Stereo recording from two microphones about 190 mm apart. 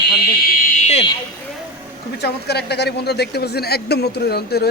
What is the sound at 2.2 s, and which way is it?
Speech, 60° left (ahead or behind).